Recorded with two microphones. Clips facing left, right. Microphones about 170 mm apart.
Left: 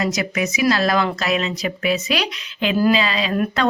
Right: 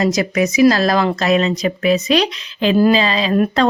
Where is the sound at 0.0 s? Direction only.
35° right (ahead or behind).